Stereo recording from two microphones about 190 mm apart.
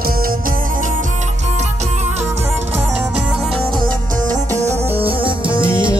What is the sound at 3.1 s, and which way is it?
Music, 5° right (ahead or behind).